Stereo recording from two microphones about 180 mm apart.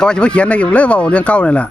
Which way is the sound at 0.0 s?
5° left (ahead or behind).